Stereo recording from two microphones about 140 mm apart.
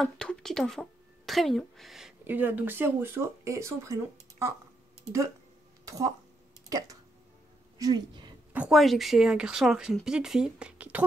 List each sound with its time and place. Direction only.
0.0 s speech: 5° left (ahead or behind)
2.2 s speech: 15° right (ahead or behind)
5.9 s a woman's voice: 25° right (ahead or behind)
8.5 s speech: centre (ahead or behind)